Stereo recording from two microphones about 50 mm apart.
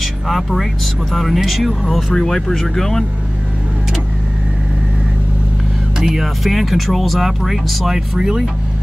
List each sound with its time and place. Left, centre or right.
0.3 s speech: centre
2.1 s speech: centre
5.9 s speech: centre